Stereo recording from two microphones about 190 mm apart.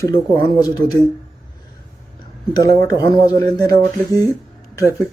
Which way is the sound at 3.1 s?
20° left (ahead or behind).